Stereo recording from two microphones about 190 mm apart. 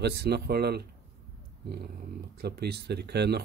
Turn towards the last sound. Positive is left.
turn(degrees=-60)  # may be behind; listen again after turning